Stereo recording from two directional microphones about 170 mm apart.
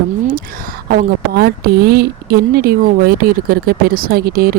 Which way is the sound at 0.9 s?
60° right (ahead or behind).